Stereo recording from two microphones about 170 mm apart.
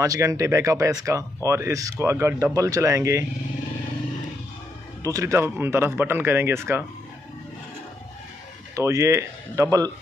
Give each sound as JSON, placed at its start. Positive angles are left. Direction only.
{"t": 0.0, "sound": "speech", "side_deg": -20}
{"t": 5.0, "sound": "speech", "side_deg": -20}
{"t": 8.7, "sound": "speech", "side_deg": -15}